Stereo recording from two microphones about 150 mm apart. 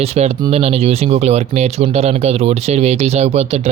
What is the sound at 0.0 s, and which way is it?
Speech, 45° right (ahead or behind).